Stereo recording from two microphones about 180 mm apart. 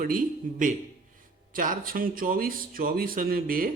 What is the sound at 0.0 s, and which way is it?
Speech, 50° right (ahead or behind).